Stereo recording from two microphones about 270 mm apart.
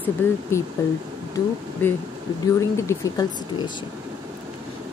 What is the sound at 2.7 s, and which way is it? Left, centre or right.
Speech, centre.